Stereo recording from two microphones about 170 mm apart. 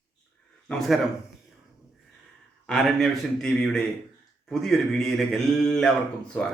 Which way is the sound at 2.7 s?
Centre (ahead or behind).